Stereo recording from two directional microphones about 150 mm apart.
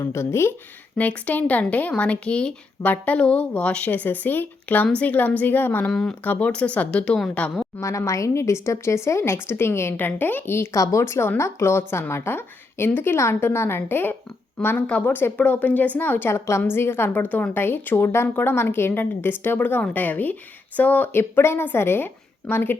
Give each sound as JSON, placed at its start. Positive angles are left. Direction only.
{"t": 0.0, "sound": "speech", "side_deg": 20}
{"t": 7.8, "sound": "speech", "side_deg": 20}